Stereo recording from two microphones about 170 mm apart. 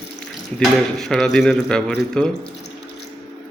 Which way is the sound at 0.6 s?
5° left (ahead or behind).